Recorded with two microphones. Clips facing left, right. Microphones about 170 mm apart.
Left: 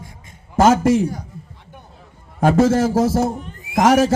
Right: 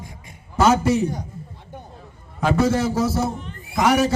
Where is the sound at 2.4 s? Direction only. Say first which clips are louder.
Left 5 dB; 45° left (ahead or behind).